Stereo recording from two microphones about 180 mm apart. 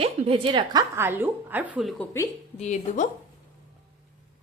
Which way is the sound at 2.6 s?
40° left (ahead or behind).